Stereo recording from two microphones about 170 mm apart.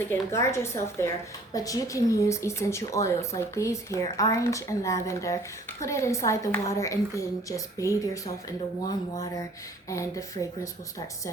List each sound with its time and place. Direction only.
0.0 s speech: 15° left (ahead or behind)